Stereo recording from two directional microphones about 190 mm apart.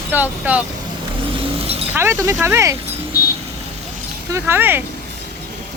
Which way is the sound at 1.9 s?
15° right (ahead or behind).